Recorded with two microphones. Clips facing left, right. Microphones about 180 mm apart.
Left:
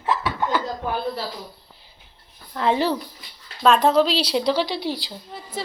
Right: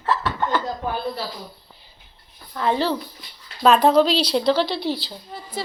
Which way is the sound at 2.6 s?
20° left (ahead or behind).